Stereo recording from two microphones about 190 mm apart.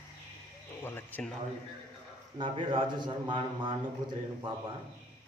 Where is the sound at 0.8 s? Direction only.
10° left (ahead or behind).